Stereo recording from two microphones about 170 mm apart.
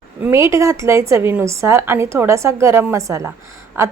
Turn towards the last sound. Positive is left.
turn(degrees=-15)  # may be behind; listen again after turning